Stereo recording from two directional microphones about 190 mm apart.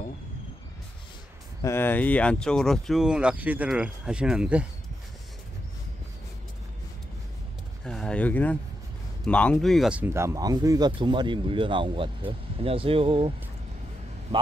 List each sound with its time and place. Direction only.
1.6 s speech: 15° left (ahead or behind); by 4.6 s 5° right (ahead or behind)
7.8 s a sound: 5° left (ahead or behind)
9.2 s speech: 5° left (ahead or behind); by 13.3 s 30° right (ahead or behind)